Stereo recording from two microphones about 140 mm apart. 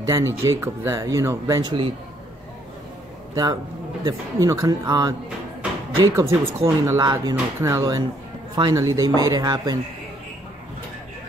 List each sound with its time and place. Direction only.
0.0 s speech: 20° right (ahead or behind)
4.0 s speech: 25° right (ahead or behind)
6.1 s speech: 20° right (ahead or behind)